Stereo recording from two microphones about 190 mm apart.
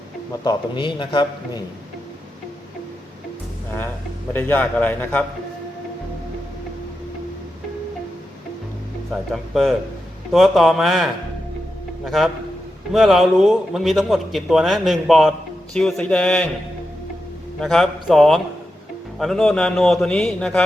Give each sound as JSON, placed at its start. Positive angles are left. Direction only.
{"t": 0.4, "sound": "a man's voice", "side_deg": 25}
{"t": 4.3, "sound": "a man's voice", "side_deg": 10}
{"t": 9.3, "sound": "a man's voice", "side_deg": 0}
{"t": 17.6, "sound": "a man's voice", "side_deg": 0}